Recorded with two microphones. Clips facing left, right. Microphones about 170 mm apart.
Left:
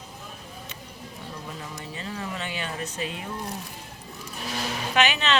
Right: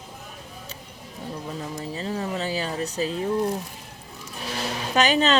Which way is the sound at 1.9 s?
35° right (ahead or behind).